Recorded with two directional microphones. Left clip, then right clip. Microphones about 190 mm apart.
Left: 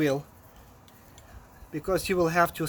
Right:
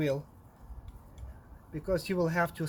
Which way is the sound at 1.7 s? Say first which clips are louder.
Left 5 dB; 35° left (ahead or behind).